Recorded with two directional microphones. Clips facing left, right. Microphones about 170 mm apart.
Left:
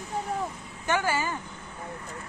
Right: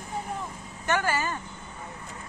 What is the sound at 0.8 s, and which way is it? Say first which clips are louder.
Speech: even; 10° left (ahead or behind).